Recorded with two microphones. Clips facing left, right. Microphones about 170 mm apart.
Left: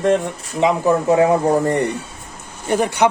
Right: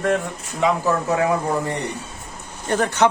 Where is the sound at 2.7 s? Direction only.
10° left (ahead or behind).